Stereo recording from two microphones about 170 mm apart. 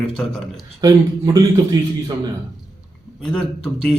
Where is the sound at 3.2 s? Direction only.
5° left (ahead or behind).